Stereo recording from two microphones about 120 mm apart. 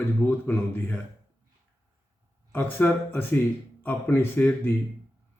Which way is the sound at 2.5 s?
20° left (ahead or behind).